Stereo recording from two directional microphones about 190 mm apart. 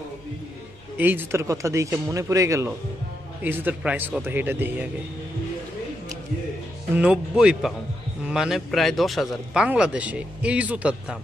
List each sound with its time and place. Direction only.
0.9 s speech: 10° right (ahead or behind)
7.0 s speech: 5° right (ahead or behind)